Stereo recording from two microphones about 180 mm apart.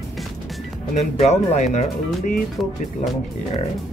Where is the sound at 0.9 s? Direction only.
40° left (ahead or behind).